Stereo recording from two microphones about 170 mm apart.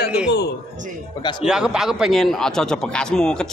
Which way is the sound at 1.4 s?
5° right (ahead or behind).